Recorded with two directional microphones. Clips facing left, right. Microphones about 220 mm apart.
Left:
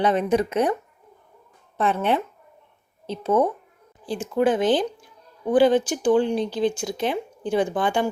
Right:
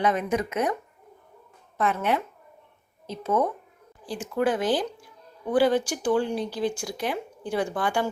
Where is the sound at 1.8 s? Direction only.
30° left (ahead or behind).